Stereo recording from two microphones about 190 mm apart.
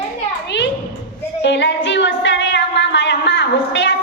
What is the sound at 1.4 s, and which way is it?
Music, 65° left (ahead or behind).